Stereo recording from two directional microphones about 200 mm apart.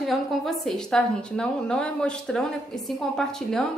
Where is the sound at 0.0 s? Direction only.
Centre (ahead or behind).